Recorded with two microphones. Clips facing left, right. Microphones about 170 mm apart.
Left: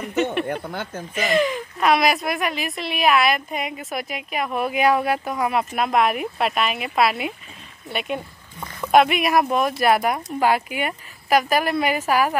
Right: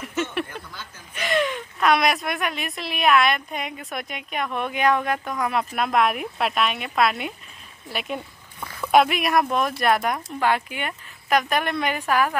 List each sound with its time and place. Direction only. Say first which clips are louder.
0.5 s speech: left 11 dB; 55° left (ahead or behind)
1.1 s a woman's voice: left 3 dB; centre (ahead or behind)